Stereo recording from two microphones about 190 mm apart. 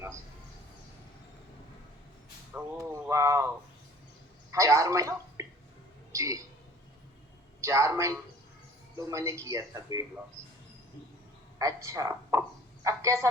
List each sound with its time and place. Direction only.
2.5 s speech: 10° right (ahead or behind)
4.5 s a man's voice: 15° right (ahead or behind)
7.6 s a man's voice: 15° right (ahead or behind)
11.6 s a man's voice: 15° right (ahead or behind)